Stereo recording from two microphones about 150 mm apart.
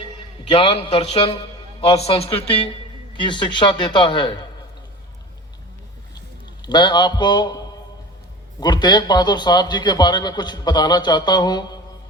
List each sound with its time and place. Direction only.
0.5 s a man's voice: 40° left (ahead or behind)
6.6 s a man's voice: 30° left (ahead or behind)
8.6 s a man's voice: 30° left (ahead or behind)